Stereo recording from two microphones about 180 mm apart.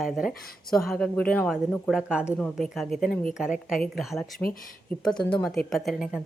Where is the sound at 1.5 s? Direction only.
5° right (ahead or behind).